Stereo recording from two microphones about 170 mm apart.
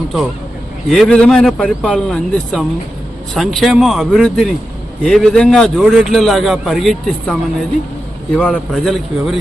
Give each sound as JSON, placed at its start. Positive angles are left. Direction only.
{"t": 0.9, "sound": "a man's voice", "side_deg": 5}